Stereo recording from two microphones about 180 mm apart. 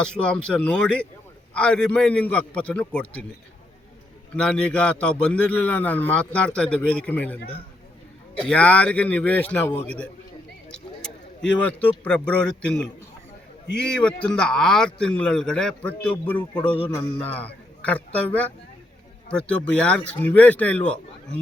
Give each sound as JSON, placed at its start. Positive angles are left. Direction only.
{"t": 0.0, "sound": "a man's voice", "side_deg": 5}
{"t": 4.4, "sound": "a man's voice", "side_deg": 5}
{"t": 11.6, "sound": "a man's voice", "side_deg": 5}
{"t": 16.6, "sound": "music", "side_deg": 30}
{"t": 17.3, "sound": "a man's voice", "side_deg": 10}